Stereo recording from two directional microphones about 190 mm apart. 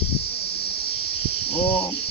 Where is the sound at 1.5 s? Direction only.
30° left (ahead or behind).